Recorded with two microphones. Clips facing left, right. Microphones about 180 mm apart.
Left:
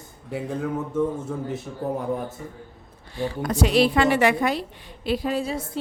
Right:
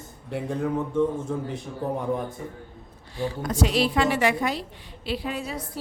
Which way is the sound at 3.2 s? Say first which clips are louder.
Left 2 dB; 65° left (ahead or behind).